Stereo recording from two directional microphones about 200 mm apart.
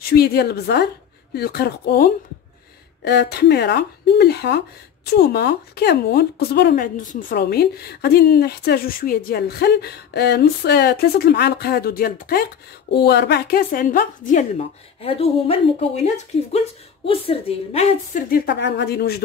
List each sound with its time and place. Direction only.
0.1 s a woman's voice: 50° left (ahead or behind)
7.0 s a woman's voice: 40° left (ahead or behind)